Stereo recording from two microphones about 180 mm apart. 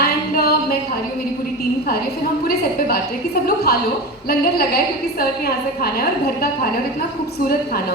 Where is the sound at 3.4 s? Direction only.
60° left (ahead or behind).